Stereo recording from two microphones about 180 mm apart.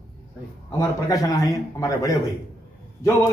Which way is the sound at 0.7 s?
20° left (ahead or behind).